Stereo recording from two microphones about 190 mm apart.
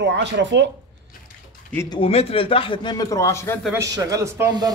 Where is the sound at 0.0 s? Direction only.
70° right (ahead or behind).